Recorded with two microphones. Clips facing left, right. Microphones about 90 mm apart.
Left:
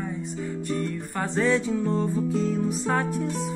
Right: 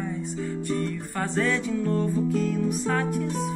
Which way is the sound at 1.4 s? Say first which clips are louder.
Left 3 dB; 15° left (ahead or behind).